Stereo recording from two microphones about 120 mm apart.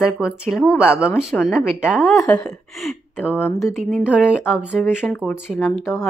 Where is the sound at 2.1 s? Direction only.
30° left (ahead or behind).